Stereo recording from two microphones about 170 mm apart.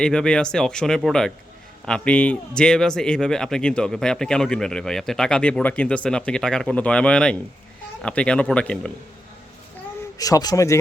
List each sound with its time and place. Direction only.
0.0 s speech: 5° left (ahead or behind)
10.2 s speech: 20° left (ahead or behind)